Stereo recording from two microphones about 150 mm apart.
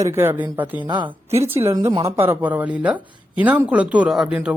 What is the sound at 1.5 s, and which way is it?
Speech, 15° right (ahead or behind).